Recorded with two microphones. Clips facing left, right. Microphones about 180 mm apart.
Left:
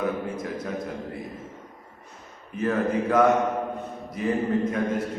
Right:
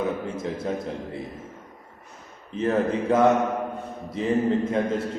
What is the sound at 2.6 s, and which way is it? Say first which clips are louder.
Mantra: right 1 dB; 25° right (ahead or behind).